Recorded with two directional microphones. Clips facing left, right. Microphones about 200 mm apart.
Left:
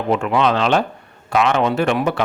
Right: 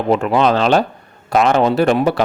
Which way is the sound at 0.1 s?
35° right (ahead or behind).